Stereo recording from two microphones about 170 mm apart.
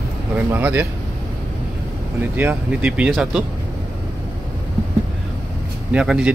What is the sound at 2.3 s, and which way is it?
Speech, 10° right (ahead or behind).